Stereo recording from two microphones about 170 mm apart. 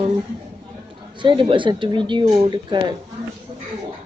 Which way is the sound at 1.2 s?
30° right (ahead or behind).